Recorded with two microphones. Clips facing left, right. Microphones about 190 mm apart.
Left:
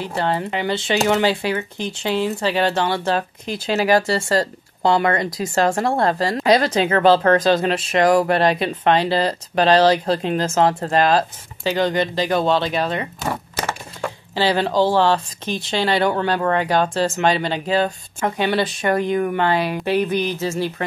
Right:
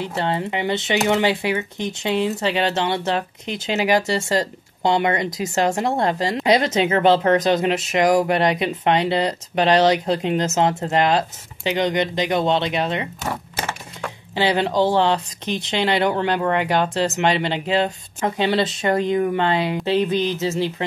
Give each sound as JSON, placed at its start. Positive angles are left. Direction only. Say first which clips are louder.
{"t": 0.0, "sound": "speech", "louder": "left 1 dB", "side_deg": -25}
{"t": 14.3, "sound": "speech", "louder": "left 1 dB", "side_deg": -20}